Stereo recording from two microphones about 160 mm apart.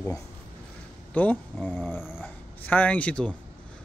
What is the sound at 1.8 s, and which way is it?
Dog, 5° right (ahead or behind).